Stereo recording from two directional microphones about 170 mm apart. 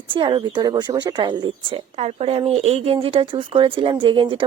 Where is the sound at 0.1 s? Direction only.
30° right (ahead or behind).